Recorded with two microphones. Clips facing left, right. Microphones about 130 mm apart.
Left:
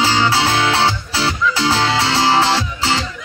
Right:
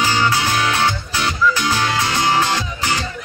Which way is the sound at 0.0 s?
30° left (ahead or behind).